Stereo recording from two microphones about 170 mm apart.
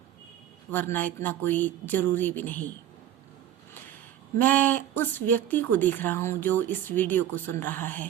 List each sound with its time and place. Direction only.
0.7 s speech: 10° left (ahead or behind)
4.4 s speech: 10° left (ahead or behind)